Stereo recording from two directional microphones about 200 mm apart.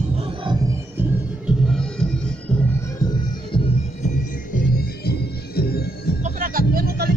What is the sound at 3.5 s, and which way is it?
Music, 40° left (ahead or behind).